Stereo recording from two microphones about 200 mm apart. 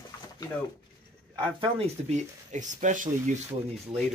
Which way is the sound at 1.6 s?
30° right (ahead or behind).